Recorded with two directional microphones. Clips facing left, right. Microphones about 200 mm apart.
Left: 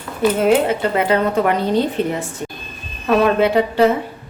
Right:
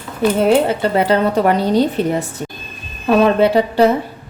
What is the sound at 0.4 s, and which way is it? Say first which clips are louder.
Speech: right 2 dB; 35° right (ahead or behind).